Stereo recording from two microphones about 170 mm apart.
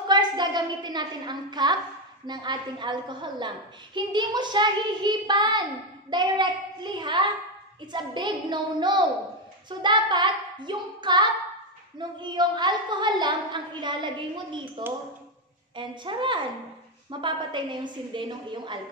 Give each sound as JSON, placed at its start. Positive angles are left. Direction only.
{"t": 0.1, "sound": "a woman's voice", "side_deg": -25}
{"t": 15.7, "sound": "a woman's voice", "side_deg": -30}